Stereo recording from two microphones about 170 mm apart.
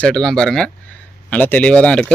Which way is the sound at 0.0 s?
5° left (ahead or behind).